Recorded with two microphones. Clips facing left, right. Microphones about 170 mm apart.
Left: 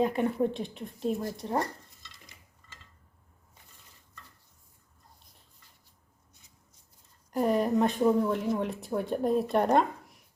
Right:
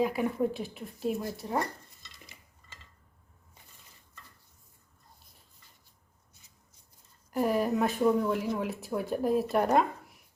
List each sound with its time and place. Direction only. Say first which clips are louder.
0.0 s speech: left 1 dB; 5° right (ahead or behind)
7.3 s speech: left 2 dB; 5° right (ahead or behind)